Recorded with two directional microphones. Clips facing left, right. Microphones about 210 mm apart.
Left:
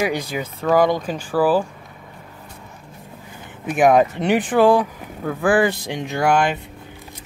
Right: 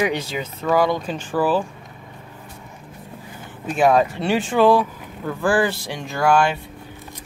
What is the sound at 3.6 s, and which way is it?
Speech, 15° left (ahead or behind).